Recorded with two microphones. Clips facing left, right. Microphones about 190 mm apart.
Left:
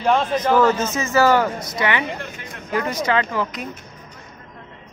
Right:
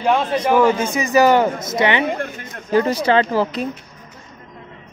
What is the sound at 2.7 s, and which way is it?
Speech, 30° right (ahead or behind).